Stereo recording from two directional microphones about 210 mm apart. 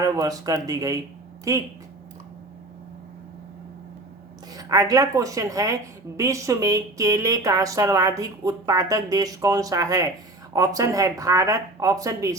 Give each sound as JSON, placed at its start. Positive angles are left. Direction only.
{"t": 0.0, "sound": "speech", "side_deg": -15}
{"t": 4.5, "sound": "speech", "side_deg": -15}